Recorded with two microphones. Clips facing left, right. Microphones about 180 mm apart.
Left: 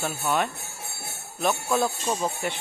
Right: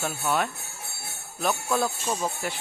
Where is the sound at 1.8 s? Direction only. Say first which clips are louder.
Left 2 dB; 5° left (ahead or behind).